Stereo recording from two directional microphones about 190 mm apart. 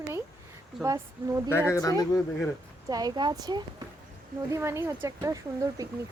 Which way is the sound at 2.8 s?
20° right (ahead or behind).